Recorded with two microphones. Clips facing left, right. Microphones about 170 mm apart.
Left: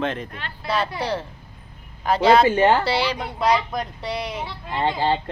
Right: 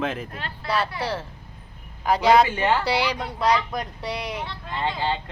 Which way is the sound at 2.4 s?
40° left (ahead or behind).